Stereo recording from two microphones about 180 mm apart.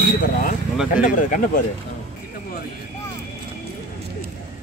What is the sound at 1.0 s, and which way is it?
Speech, 45° left (ahead or behind).